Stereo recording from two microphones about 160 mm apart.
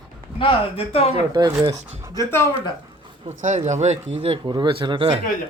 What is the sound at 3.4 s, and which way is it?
Speech, 50° right (ahead or behind).